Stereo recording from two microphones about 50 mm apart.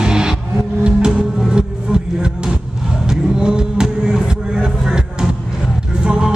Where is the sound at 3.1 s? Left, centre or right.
Centre.